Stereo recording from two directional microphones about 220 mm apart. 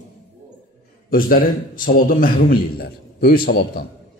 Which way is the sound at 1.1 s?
40° left (ahead or behind).